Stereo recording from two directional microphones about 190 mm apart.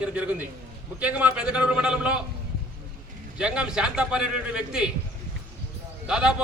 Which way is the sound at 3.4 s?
5° right (ahead or behind).